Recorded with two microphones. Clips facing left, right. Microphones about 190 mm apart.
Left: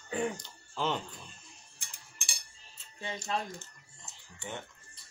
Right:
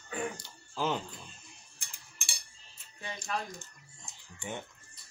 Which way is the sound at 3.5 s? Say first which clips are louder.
Left 1 dB; 15° right (ahead or behind).